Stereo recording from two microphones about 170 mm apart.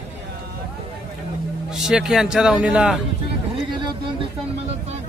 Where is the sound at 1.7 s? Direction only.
5° right (ahead or behind).